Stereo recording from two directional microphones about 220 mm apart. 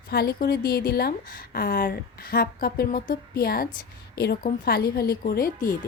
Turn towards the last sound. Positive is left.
turn(degrees=40)  # may be behind; listen again after turning